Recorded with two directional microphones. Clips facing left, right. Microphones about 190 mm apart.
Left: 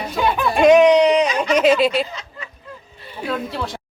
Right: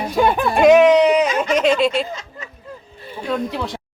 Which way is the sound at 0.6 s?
5° right (ahead or behind).